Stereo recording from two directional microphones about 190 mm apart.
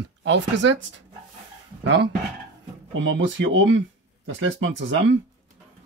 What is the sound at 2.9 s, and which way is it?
Speech, 85° right.